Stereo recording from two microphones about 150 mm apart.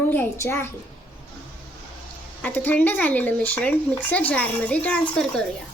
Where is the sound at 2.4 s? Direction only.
10° left (ahead or behind).